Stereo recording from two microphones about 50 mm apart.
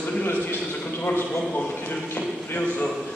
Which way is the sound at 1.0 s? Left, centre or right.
Left.